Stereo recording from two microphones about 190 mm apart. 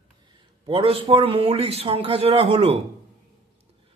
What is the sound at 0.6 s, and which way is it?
Speech, 30° right (ahead or behind).